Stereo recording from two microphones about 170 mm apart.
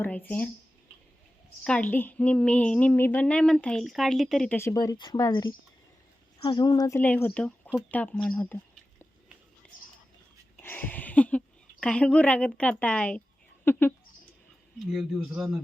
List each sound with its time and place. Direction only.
0.0 s a woman's voice: 10° left (ahead or behind)
1.6 s a woman's voice: 5° left (ahead or behind)
4.5 s a woman's voice: 20° left (ahead or behind)
9.6 s a sound: 5° left (ahead or behind)
10.6 s a woman's voice: 10° left (ahead or behind)
14.8 s a man's voice: centre (ahead or behind)